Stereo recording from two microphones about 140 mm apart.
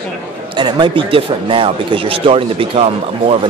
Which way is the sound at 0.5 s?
35° right (ahead or behind).